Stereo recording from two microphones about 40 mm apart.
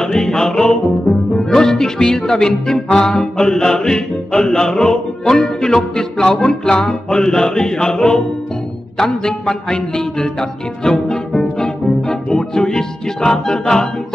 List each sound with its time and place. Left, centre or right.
0.0 s music: centre
9.5 s music: left